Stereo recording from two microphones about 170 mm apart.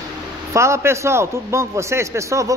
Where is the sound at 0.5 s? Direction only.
15° right (ahead or behind).